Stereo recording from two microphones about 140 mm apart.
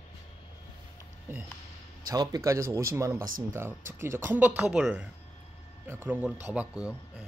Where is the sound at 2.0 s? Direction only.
25° right (ahead or behind); by 7.2 s 10° right (ahead or behind).